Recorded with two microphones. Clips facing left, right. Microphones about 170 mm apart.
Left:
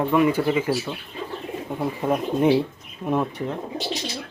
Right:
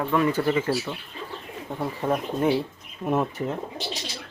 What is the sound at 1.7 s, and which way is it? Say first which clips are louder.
Speech: left 2 dB; 10° left (ahead or behind).